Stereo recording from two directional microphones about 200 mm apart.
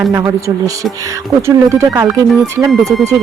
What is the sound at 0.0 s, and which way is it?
Speech, 15° right (ahead or behind).